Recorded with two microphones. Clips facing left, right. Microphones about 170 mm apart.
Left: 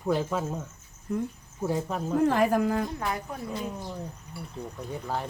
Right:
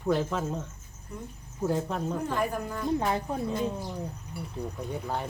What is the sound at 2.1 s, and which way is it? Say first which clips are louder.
Speech: left 10 dB; 90° left.